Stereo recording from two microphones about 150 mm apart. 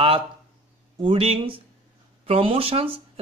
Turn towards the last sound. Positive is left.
turn(degrees=-40)  # may be behind; listen again after turning